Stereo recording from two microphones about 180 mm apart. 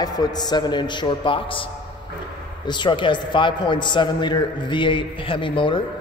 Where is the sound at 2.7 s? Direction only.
25° left (ahead or behind).